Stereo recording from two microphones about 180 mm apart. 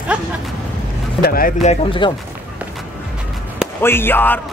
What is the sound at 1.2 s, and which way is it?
Speech, 55° left (ahead or behind).